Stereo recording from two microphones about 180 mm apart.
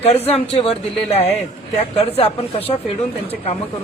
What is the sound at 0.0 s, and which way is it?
Speech, 35° left (ahead or behind).